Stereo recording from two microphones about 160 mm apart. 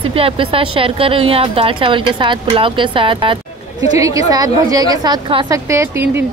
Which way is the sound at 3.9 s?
20° right (ahead or behind).